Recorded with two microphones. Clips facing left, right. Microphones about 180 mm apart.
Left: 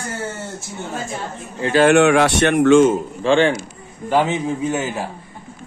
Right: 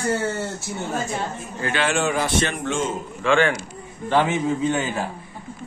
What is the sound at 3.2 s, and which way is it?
Speech, 30° left (ahead or behind).